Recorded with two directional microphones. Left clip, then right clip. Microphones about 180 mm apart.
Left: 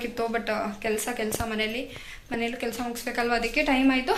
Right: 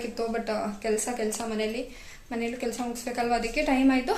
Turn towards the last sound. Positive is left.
turn(degrees=-10)  # may be behind; listen again after turning